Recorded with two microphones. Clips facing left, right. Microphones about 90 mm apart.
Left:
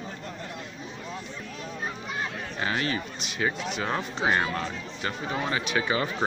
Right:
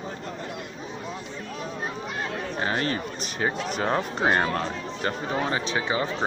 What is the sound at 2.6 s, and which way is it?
Speech, 40° right (ahead or behind).